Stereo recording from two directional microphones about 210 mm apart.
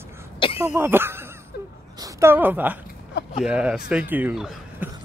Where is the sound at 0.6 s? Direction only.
10° right (ahead or behind).